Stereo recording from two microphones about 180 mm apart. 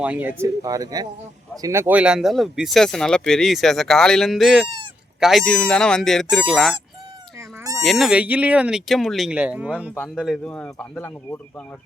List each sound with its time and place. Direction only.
0.0 s speech: 10° right (ahead or behind)
7.3 s goat: 20° right (ahead or behind)
7.8 s speech: centre (ahead or behind)
9.9 s speech: 5° left (ahead or behind)